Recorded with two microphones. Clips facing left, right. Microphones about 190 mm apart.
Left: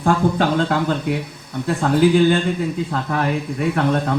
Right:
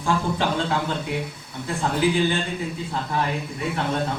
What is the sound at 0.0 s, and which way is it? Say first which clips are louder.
Speech: left 6 dB; 55° left (ahead or behind).